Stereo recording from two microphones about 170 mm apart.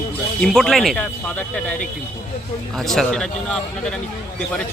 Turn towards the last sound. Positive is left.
turn(degrees=5)  # may be behind; listen again after turning